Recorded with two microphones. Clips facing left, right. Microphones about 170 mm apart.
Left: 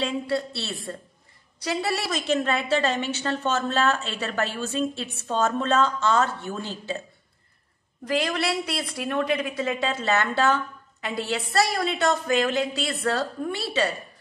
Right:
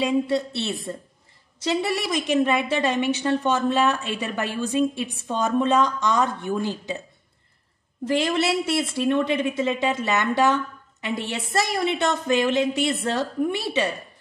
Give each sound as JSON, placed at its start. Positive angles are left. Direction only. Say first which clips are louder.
{"t": 0.0, "sound": "a woman's voice", "louder": "right 4 dB", "side_deg": -20}
{"t": 8.0, "sound": "a woman's voice", "louder": "right 3 dB", "side_deg": -25}